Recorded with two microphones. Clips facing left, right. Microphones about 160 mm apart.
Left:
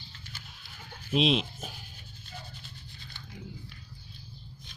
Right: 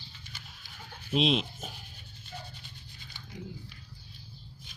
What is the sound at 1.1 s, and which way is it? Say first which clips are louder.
Speech: left 1 dB; centre (ahead or behind).